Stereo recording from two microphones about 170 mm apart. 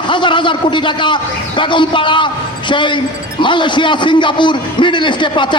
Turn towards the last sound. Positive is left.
turn(degrees=30)  # may be behind; listen again after turning